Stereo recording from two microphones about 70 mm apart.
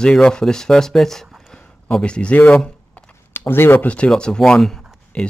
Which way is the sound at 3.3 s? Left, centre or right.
Left.